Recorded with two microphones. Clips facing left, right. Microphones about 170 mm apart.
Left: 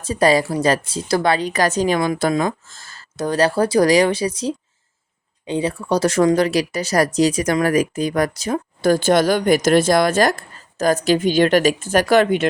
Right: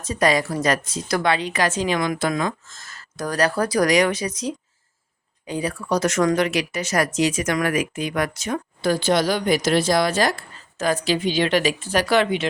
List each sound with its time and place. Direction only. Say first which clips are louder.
0.0 s a woman's voice: left 4 dB; 30° left (ahead or behind)
8.8 s speech: left 5 dB; 45° left (ahead or behind)